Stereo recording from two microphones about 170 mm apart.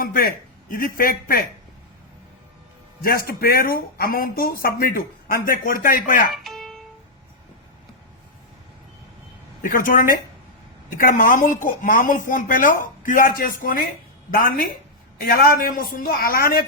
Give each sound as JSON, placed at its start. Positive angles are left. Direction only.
{"t": 0.0, "sound": "speech", "side_deg": 60}
{"t": 3.0, "sound": "speech", "side_deg": 60}
{"t": 6.3, "sound": "music", "side_deg": 0}
{"t": 9.6, "sound": "speech", "side_deg": 55}